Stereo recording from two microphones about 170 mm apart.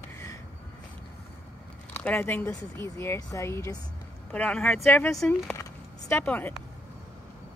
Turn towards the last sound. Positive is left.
turn(degrees=10)  # may be behind; listen again after turning